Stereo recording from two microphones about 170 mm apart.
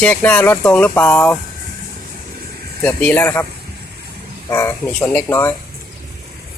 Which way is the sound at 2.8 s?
10° left (ahead or behind).